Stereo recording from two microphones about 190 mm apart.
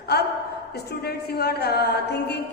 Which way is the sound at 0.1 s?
55° left (ahead or behind).